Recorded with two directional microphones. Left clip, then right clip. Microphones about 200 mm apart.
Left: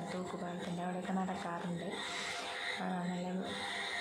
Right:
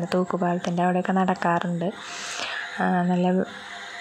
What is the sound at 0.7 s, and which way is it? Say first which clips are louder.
Speech: right 16 dB; 40° right (ahead or behind).